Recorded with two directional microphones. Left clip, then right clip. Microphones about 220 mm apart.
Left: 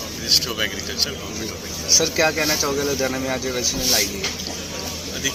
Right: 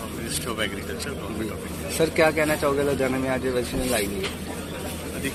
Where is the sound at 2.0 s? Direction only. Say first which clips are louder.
Right 1 dB; 35° right (ahead or behind).